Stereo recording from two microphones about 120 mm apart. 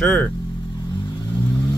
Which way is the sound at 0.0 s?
10° left (ahead or behind).